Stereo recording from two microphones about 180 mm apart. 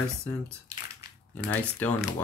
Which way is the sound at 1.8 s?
Centre (ahead or behind).